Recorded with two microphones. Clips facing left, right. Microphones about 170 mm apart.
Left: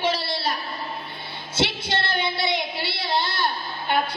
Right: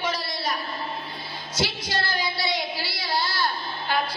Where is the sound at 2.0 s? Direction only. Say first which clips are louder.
Left 1 dB; 25° left (ahead or behind).